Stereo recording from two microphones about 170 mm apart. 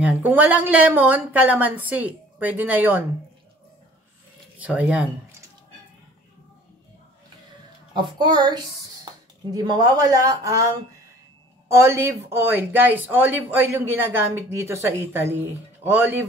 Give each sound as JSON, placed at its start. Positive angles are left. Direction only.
{"t": 0.0, "sound": "speech", "side_deg": -10}
{"t": 4.6, "sound": "speech", "side_deg": -5}
{"t": 7.9, "sound": "speech", "side_deg": -25}
{"t": 11.7, "sound": "speech", "side_deg": -15}